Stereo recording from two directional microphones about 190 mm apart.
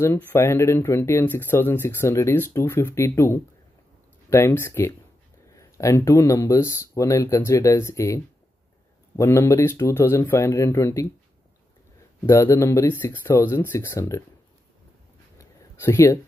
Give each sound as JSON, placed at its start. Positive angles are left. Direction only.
{"t": 0.0, "sound": "speech", "side_deg": 15}
{"t": 12.3, "sound": "speech", "side_deg": 15}
{"t": 15.3, "sound": "a sound", "side_deg": 15}